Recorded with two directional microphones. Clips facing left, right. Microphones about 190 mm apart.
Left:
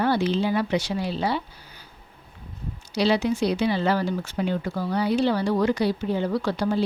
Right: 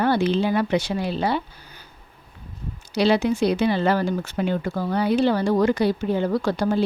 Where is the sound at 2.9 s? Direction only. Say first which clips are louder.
Right 3 dB; 55° right (ahead or behind).